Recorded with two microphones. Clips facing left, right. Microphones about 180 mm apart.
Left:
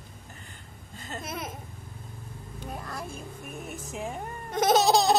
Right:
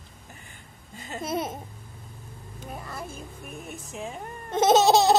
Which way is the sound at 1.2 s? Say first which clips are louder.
Right 9 dB; 30° right (ahead or behind).